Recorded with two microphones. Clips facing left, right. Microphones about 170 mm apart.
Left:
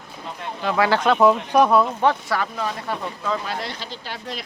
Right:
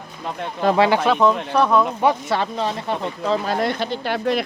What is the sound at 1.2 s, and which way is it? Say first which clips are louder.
Speech: left 1 dB; 10° left (ahead or behind).